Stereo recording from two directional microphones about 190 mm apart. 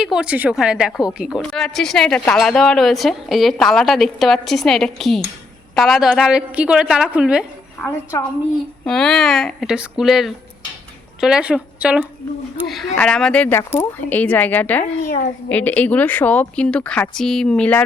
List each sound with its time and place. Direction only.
0.0 s a woman's voice: 5° right (ahead or behind)
7.8 s a woman's voice: 10° left (ahead or behind)
15.0 s a woman's voice: 50° left (ahead or behind)
15.4 s a woman's voice: 10° left (ahead or behind)